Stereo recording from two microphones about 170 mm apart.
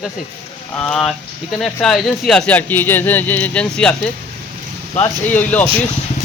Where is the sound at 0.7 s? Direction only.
5° left (ahead or behind).